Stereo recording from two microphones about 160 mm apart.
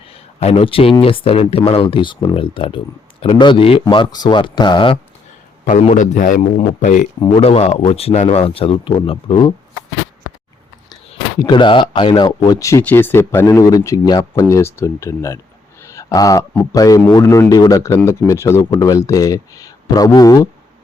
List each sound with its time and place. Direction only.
0.1 s speech: 40° left (ahead or behind)
5.6 s a man's voice: 50° left (ahead or behind)
7.3 s speech: 40° left (ahead or behind)
11.3 s speech: 30° left (ahead or behind)